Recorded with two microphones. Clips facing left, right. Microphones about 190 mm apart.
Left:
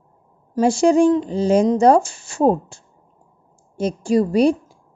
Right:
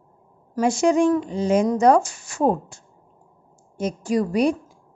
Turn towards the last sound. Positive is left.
turn(degrees=30)  # may be behind; listen again after turning